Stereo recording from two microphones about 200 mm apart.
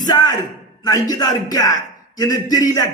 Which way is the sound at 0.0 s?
20° left (ahead or behind).